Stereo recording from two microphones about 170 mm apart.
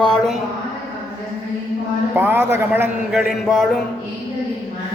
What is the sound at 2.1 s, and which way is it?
Speech, 10° right (ahead or behind).